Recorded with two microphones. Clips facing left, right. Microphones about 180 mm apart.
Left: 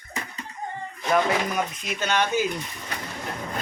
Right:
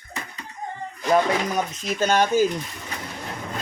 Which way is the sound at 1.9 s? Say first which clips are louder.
Right 5 dB; 40° right (ahead or behind).